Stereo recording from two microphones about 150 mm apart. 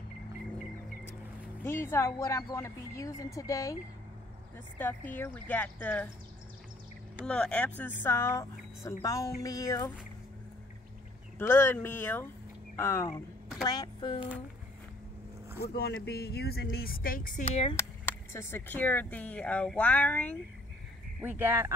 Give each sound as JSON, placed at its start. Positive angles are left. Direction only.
{"t": 1.6, "sound": "a woman's voice", "side_deg": 15}
{"t": 4.7, "sound": "speech", "side_deg": 15}
{"t": 7.2, "sound": "a woman's voice", "side_deg": 5}
{"t": 11.3, "sound": "speech", "side_deg": 15}
{"t": 13.7, "sound": "a woman's voice", "side_deg": 30}
{"t": 15.6, "sound": "speech", "side_deg": 90}
{"t": 17.5, "sound": "speech", "side_deg": 35}
{"t": 17.7, "sound": "speech", "side_deg": 15}
{"t": 21.2, "sound": "speech", "side_deg": -15}